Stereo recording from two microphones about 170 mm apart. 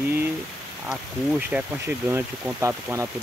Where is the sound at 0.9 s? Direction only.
10° right (ahead or behind).